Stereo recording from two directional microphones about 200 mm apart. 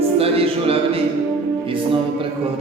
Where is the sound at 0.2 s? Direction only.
30° right (ahead or behind).